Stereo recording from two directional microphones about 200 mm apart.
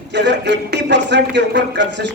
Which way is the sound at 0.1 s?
60° right (ahead or behind).